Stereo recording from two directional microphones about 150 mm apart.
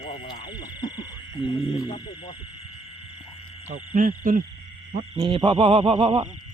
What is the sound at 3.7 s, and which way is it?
Hoot, 60° right (ahead or behind).